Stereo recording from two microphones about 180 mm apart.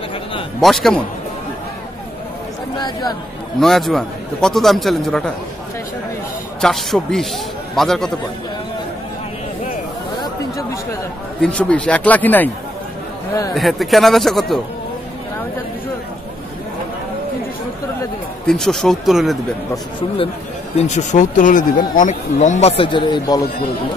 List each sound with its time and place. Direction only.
0.6 s a man's voice: centre (ahead or behind)
2.8 s speech: 20° left (ahead or behind)
3.5 s a man's voice: centre (ahead or behind)
6.6 s a man's voice: centre (ahead or behind)
11.4 s speech: 5° left (ahead or behind)
13.6 s a man's voice: centre (ahead or behind)
18.5 s a man's voice: centre (ahead or behind)
19.7 s speech: 30° left (ahead or behind)